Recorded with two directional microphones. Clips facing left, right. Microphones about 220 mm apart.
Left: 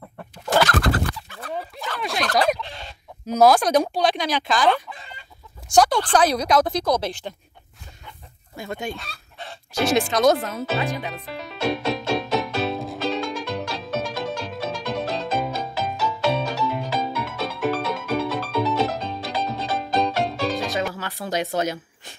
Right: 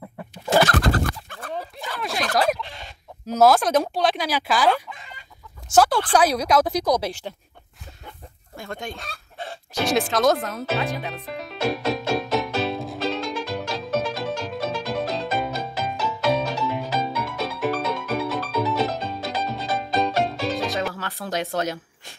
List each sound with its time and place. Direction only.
2.0 s turkey: centre (ahead or behind)
3.3 s speech: centre (ahead or behind)
4.9 s chicken: 30° left (ahead or behind)
5.7 s a woman's voice: 5° right (ahead or behind)
8.5 s speech: 5° left (ahead or behind)
9.8 s music: centre (ahead or behind)
21.2 s speech: centre (ahead or behind)